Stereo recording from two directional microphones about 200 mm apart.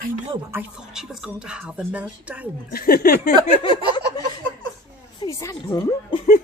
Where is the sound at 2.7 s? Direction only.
50° left (ahead or behind).